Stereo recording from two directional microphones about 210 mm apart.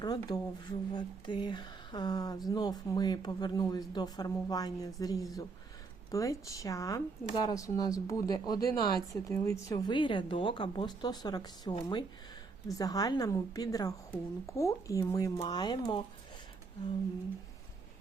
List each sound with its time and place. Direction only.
0.0 s a woman's voice: 20° left (ahead or behind)